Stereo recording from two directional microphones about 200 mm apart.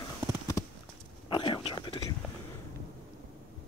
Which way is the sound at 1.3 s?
25° left (ahead or behind).